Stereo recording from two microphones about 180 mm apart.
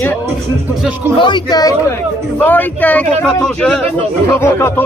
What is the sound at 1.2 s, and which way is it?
Speech, 25° left (ahead or behind).